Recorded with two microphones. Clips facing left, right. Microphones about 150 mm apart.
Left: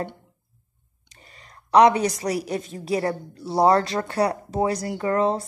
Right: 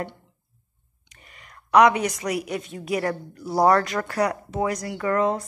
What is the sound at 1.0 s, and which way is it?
A woman's voice, 35° left (ahead or behind).